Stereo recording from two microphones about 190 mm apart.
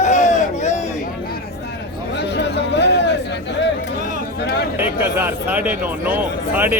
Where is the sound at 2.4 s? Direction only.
65° left (ahead or behind).